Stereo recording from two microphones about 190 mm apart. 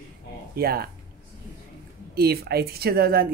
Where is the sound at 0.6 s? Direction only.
50° right (ahead or behind).